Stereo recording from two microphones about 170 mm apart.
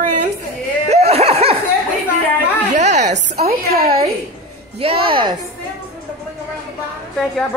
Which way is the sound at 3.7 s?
60° right (ahead or behind).